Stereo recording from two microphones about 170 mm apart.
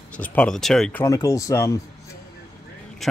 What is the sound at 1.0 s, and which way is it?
Speech, 20° left (ahead or behind).